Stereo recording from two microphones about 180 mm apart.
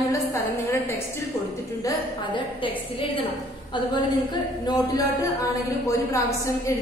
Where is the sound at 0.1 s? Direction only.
15° left (ahead or behind).